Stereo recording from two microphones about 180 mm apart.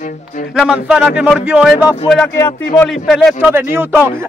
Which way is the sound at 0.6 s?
5° right (ahead or behind).